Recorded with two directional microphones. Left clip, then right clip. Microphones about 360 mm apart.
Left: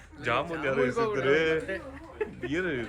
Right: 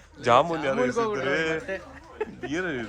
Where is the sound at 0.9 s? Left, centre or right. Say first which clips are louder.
Right 2 dB; right.